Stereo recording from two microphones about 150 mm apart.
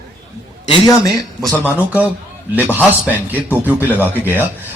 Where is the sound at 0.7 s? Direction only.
25° left (ahead or behind).